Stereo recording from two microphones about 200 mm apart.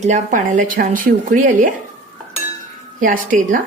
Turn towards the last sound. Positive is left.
turn(degrees=-40)  # may be behind; listen again after turning